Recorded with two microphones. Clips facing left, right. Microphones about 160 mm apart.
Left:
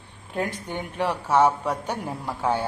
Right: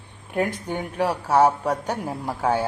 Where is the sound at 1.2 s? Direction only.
35° right (ahead or behind).